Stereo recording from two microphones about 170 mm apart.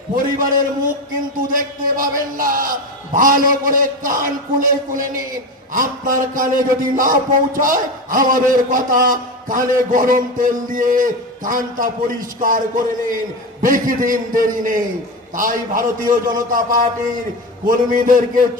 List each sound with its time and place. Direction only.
0.1 s a man's voice: 55° right (ahead or behind)
1.5 s a man's voice: 55° right (ahead or behind)
17.6 s a man's voice: 55° right (ahead or behind)